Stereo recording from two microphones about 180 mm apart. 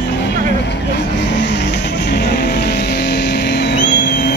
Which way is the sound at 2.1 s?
65° left (ahead or behind).